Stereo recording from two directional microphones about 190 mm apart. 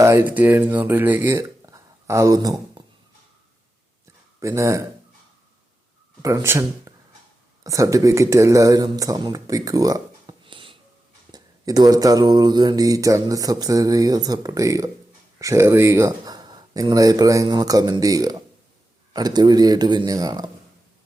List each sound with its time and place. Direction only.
0.0 s speech: 10° right (ahead or behind)
4.4 s speech: 15° right (ahead or behind)
6.2 s speech: 15° right (ahead or behind)
11.3 s mantra: 20° right (ahead or behind)